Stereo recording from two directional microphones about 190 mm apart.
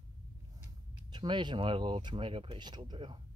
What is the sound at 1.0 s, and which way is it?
Speech, 25° right (ahead or behind).